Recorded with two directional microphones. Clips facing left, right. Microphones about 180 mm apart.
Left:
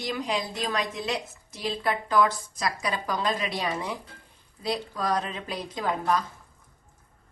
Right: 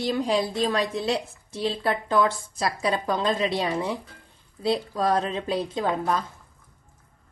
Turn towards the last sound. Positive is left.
turn(degrees=-25)  # may be behind; listen again after turning